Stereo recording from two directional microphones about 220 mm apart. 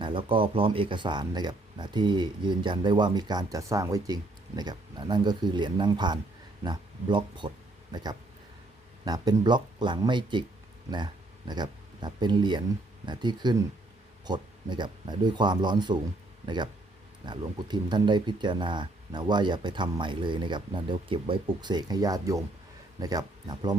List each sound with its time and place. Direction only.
0.0 s speech: 25° right (ahead or behind)
9.0 s speech: 15° right (ahead or behind)
17.2 s speech: 20° right (ahead or behind)